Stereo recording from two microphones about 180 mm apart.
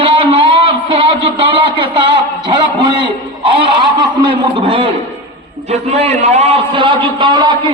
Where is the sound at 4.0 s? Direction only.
25° right (ahead or behind).